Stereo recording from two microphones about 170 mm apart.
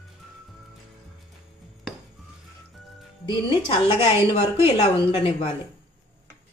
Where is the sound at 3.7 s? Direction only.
30° left (ahead or behind).